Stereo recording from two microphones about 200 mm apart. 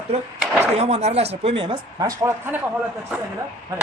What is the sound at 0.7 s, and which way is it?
Speech, 30° right (ahead or behind).